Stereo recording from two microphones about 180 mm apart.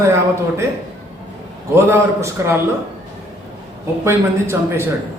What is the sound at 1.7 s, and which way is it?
Speech, 15° right (ahead or behind).